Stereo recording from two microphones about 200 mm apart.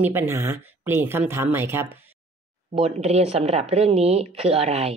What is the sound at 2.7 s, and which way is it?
Speech, 30° right (ahead or behind).